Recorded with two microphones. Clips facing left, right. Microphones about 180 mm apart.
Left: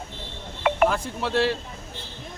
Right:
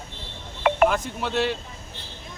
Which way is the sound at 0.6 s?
55° right (ahead or behind).